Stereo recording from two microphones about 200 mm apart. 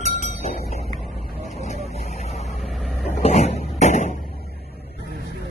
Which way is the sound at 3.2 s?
35° left (ahead or behind).